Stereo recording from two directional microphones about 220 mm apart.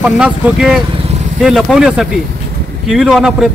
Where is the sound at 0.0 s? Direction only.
5° right (ahead or behind).